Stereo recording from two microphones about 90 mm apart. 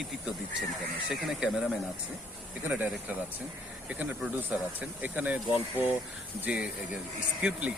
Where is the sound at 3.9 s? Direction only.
15° right (ahead or behind).